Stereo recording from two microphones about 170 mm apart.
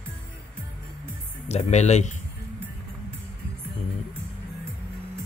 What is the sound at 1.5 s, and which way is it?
Speech, 40° left (ahead or behind).